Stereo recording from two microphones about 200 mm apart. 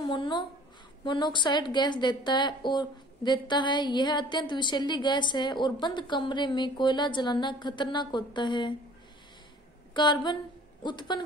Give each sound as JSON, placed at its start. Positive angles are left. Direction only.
{"t": 0.0, "sound": "a woman's voice", "side_deg": 25}
{"t": 9.9, "sound": "a woman's voice", "side_deg": 20}